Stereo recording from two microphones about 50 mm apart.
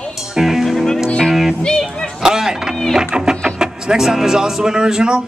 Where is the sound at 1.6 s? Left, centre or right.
Centre.